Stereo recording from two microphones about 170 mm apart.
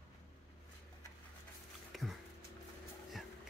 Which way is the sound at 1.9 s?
Centre (ahead or behind).